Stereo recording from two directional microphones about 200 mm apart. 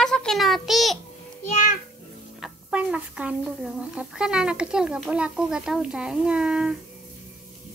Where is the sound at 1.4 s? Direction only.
40° left (ahead or behind).